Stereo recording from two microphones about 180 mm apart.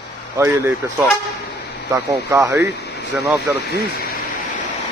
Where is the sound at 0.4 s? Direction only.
15° right (ahead or behind).